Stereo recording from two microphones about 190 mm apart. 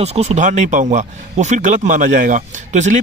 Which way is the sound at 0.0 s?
35° right (ahead or behind).